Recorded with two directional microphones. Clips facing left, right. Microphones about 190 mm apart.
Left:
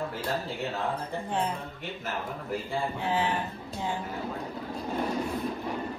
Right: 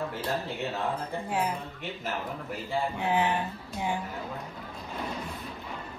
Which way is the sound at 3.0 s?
15° right (ahead or behind).